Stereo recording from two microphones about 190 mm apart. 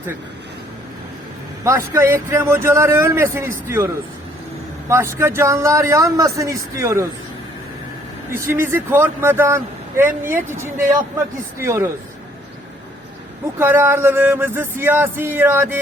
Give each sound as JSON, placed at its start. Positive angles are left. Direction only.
{"t": 1.6, "sound": "a man's voice", "side_deg": -15}
{"t": 4.9, "sound": "a man's voice", "side_deg": -15}
{"t": 8.3, "sound": "a man's voice", "side_deg": -15}
{"t": 11.6, "sound": "a man's voice", "side_deg": -15}
{"t": 13.6, "sound": "a man's voice", "side_deg": -10}